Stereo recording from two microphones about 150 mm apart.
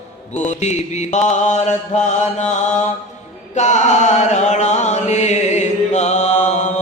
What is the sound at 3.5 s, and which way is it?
Chant, 50° left (ahead or behind).